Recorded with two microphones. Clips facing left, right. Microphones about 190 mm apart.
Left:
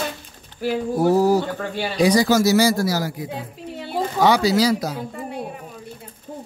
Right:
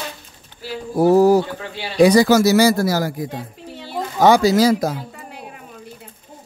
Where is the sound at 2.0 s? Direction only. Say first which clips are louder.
Right 4 dB; 60° right (ahead or behind).